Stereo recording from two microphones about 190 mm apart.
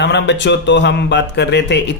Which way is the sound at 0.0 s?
65° left (ahead or behind).